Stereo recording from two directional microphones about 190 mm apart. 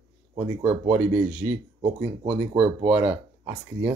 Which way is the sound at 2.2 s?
30° right (ahead or behind).